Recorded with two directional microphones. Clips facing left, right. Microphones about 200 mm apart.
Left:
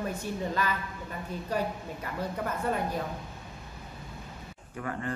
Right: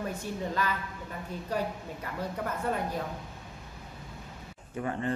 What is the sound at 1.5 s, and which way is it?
A woman's voice, 5° left (ahead or behind).